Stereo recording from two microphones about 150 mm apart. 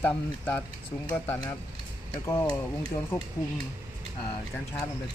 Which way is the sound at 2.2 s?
15° left (ahead or behind).